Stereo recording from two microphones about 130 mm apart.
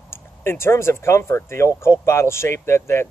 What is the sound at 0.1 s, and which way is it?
Speech, 20° left (ahead or behind).